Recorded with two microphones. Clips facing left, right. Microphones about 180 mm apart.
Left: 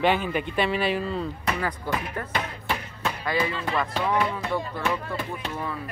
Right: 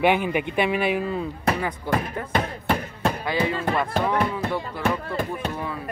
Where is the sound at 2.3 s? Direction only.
50° right (ahead or behind).